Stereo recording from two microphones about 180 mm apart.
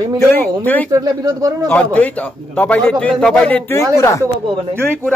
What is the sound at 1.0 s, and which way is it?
Speech, 20° right (ahead or behind).